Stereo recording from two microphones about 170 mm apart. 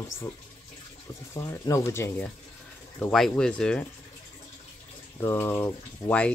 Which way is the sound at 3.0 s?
Centre (ahead or behind).